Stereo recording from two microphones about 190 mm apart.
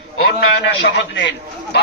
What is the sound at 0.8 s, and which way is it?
Speech, 70° left (ahead or behind).